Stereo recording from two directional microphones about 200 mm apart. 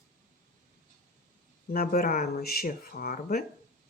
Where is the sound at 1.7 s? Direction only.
50° left (ahead or behind).